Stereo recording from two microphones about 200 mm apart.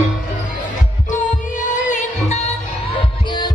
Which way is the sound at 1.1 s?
40° left (ahead or behind).